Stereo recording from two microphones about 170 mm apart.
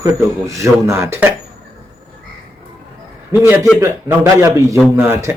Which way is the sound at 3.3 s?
10° right (ahead or behind).